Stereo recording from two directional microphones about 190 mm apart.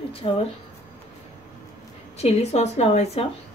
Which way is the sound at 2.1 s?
35° left (ahead or behind).